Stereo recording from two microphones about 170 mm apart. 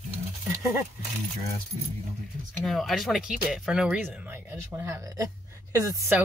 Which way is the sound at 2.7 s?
Centre (ahead or behind).